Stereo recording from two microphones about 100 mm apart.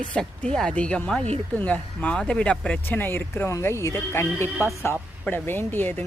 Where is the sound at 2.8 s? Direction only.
20° left (ahead or behind).